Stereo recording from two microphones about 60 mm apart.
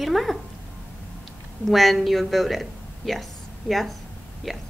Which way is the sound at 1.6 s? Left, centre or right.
Centre.